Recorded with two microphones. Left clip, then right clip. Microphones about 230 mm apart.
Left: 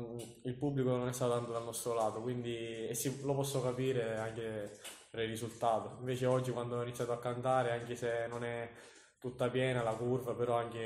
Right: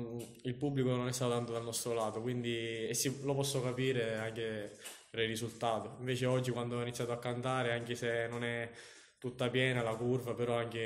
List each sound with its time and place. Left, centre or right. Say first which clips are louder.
0.7 s a man's voice: left 1 dB; right